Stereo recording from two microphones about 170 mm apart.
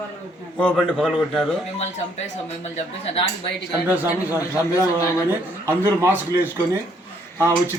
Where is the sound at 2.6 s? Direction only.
35° left (ahead or behind).